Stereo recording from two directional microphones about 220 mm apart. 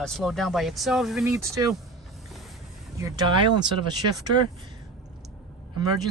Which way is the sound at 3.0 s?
20° right (ahead or behind).